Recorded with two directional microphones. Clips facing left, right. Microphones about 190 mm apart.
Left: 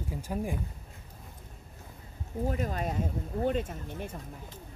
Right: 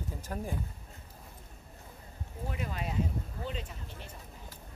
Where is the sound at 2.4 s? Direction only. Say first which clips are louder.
Left 6 dB; 45° left (ahead or behind).